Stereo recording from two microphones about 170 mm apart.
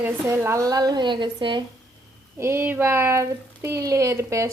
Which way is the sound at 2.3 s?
15° right (ahead or behind).